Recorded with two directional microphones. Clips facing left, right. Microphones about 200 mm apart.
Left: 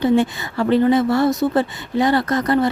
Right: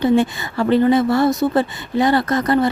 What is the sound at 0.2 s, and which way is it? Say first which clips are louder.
Speech: right 1 dB; 35° right (ahead or behind).